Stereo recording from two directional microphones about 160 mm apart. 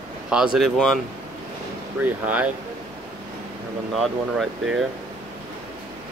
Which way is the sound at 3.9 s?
Centre (ahead or behind).